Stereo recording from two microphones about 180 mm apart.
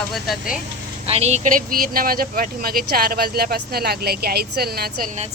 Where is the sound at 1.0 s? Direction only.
35° right (ahead or behind); by 5.1 s 55° right (ahead or behind).